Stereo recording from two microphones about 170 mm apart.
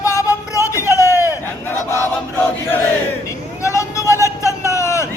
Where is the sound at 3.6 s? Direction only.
15° left (ahead or behind).